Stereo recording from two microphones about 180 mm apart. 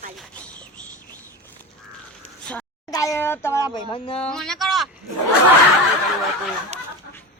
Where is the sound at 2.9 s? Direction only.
20° left (ahead or behind).